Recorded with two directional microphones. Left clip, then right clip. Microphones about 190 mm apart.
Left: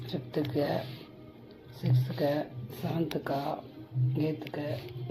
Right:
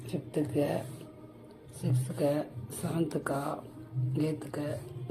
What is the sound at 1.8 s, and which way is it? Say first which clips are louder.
Speech: even; 10° right (ahead or behind).